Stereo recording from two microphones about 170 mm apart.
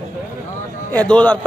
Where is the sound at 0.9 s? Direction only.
5° left (ahead or behind).